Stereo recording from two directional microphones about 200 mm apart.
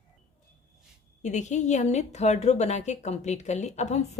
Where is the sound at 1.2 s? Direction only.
35° left (ahead or behind).